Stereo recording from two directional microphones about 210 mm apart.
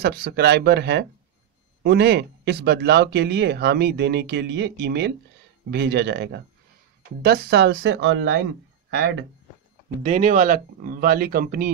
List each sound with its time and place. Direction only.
0.0 s speech: 50° right (ahead or behind)
10.0 s speech: 35° right (ahead or behind)